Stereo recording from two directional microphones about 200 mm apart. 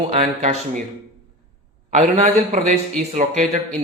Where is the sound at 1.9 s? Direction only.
35° right (ahead or behind).